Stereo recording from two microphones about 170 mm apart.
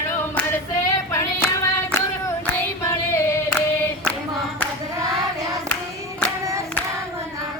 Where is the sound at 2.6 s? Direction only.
15° left (ahead or behind).